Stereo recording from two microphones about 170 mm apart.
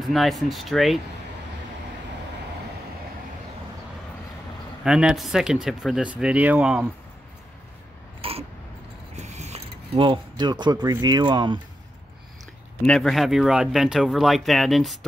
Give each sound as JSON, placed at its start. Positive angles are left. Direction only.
{"t": 0.0, "sound": "speech", "side_deg": 0}
{"t": 4.8, "sound": "speech", "side_deg": -5}
{"t": 8.2, "sound": "a sound", "side_deg": -35}
{"t": 9.1, "sound": "speech", "side_deg": -40}
{"t": 12.8, "sound": "speech", "side_deg": 5}